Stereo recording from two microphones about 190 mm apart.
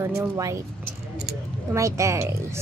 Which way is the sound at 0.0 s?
15° right (ahead or behind).